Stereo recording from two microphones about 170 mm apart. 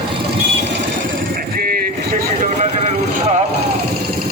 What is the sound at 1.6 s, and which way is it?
Vehicle, 60° right (ahead or behind).